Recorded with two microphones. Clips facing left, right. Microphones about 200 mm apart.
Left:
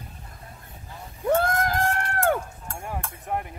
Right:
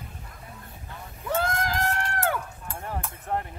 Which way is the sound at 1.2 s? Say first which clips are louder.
Left 5 dB; 55° left (ahead or behind).